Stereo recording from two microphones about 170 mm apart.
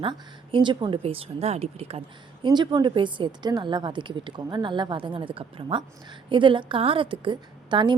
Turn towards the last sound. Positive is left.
turn(degrees=-25)  # may be behind; listen again after turning